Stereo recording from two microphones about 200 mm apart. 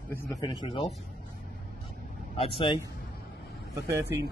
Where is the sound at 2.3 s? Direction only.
30° left (ahead or behind).